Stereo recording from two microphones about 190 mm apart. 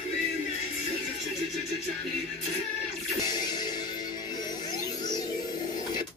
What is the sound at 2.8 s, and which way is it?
Music, 20° left (ahead or behind).